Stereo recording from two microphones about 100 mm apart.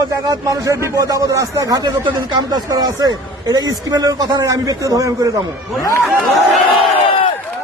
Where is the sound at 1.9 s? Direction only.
25° right (ahead or behind).